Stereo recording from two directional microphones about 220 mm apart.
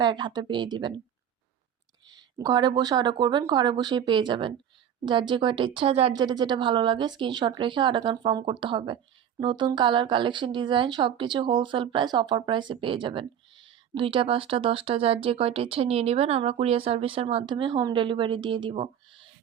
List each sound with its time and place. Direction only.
0.0 s speech: 20° right (ahead or behind)
2.1 s speech: 20° right (ahead or behind)